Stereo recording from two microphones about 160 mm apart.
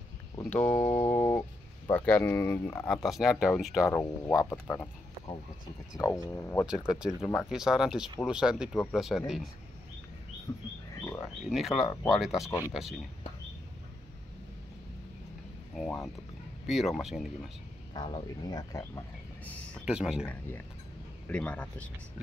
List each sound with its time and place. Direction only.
0.4 s speech: 10° left (ahead or behind)
2.9 s speech: centre (ahead or behind)
3.8 s speech: 15° left (ahead or behind)
5.9 s speech: 20° left (ahead or behind)
6.9 s speech: 5° right (ahead or behind)
10.5 s speech: 25° left (ahead or behind)
11.0 s a sound: 20° left (ahead or behind)
11.4 s speech: centre (ahead or behind)
12.4 s speech: 20° left (ahead or behind)
15.7 s speech: 5° left (ahead or behind)
17.9 s speech: 30° left (ahead or behind)
19.4 s a sound: 10° left (ahead or behind)
19.9 s speech: 5° right (ahead or behind)
21.3 s speech: 5° left (ahead or behind)